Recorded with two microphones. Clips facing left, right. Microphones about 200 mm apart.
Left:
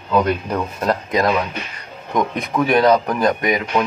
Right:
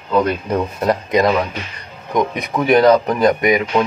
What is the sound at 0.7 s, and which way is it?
Speech, 15° right (ahead or behind).